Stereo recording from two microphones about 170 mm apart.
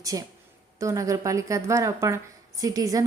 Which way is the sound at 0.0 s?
20° right (ahead or behind).